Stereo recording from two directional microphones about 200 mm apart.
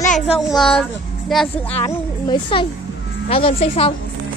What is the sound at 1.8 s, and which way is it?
Speech, 20° left (ahead or behind).